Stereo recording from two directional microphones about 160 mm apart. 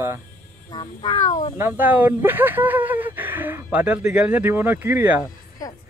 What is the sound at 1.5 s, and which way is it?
Speech, 15° right (ahead or behind).